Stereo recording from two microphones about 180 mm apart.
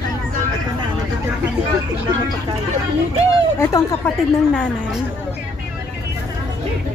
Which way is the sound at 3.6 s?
10° left (ahead or behind).